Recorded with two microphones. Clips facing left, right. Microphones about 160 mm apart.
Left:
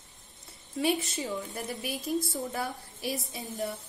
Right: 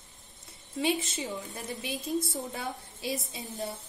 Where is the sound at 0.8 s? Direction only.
20° right (ahead or behind).